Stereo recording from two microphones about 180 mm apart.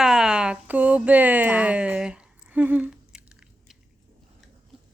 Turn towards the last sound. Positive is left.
turn(degrees=-5)  # may be behind; listen again after turning